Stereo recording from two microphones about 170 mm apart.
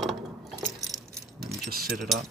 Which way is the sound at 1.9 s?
Centre (ahead or behind).